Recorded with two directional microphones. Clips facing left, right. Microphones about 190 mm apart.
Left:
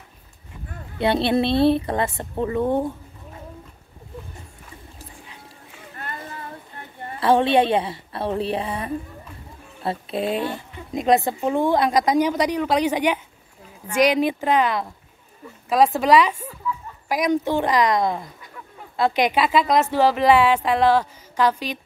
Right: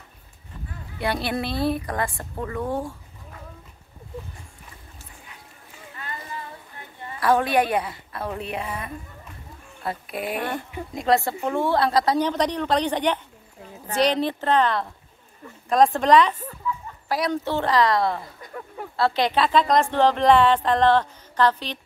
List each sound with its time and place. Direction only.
0.9 s a woman's voice: 25° left (ahead or behind)
7.2 s a woman's voice: 25° left (ahead or behind)
18.4 s a sound: 45° right (ahead or behind)
18.9 s speech: 15° left (ahead or behind)